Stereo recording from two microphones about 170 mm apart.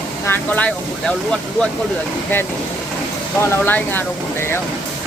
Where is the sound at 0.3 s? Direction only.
10° left (ahead or behind).